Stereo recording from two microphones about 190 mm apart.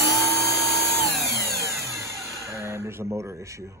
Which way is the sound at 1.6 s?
15° right (ahead or behind).